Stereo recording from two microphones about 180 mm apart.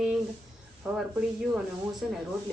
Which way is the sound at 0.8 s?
Centre (ahead or behind).